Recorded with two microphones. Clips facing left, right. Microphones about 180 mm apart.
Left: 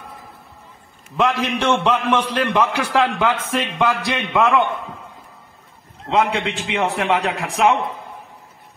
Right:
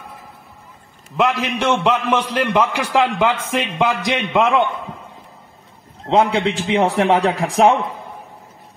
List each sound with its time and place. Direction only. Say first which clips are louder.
1.4 s a man's voice: right 1 dB; 10° right (ahead or behind)
6.0 s a man's voice: right 3 dB; 30° right (ahead or behind)